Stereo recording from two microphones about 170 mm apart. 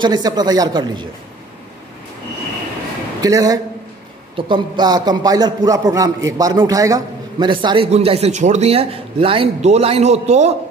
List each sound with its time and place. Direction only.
0.0 s a man's voice: 25° right (ahead or behind)
3.2 s a man's voice: 20° right (ahead or behind); by 10.5 s 40° right (ahead or behind)